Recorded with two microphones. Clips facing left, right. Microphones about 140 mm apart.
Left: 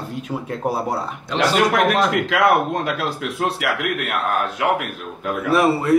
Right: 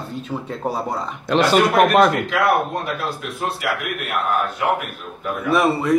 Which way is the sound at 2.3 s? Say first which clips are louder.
Left 2 dB; 90° left.